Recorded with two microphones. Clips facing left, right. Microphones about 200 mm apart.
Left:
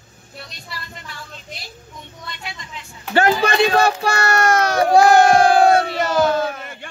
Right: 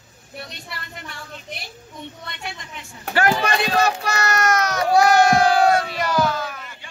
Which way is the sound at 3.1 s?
25° left (ahead or behind).